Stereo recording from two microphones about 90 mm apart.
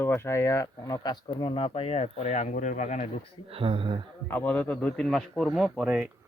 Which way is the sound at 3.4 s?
85° right.